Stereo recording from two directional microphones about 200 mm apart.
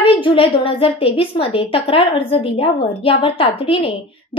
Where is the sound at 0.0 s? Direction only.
25° left (ahead or behind).